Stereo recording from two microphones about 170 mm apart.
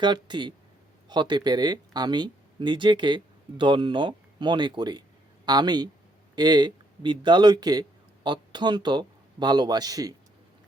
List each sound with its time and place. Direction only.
0.0 s a man's voice: 25° right (ahead or behind)